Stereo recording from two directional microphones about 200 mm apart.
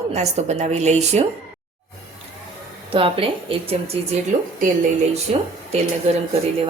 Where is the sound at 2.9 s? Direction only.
25° right (ahead or behind).